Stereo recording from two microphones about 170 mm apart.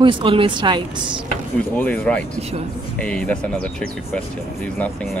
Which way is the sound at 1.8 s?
5° left (ahead or behind).